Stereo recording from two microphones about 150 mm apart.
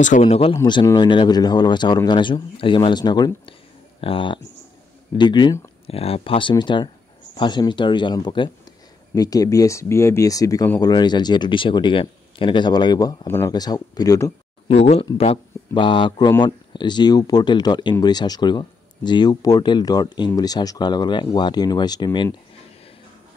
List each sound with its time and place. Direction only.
0.2 s speech: 40° left (ahead or behind)
0.8 s speech: 30° left (ahead or behind)
14.7 s speech: 45° left (ahead or behind); by 22.3 s 30° left (ahead or behind)